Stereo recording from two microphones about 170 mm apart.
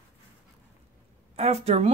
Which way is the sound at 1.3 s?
40° right (ahead or behind).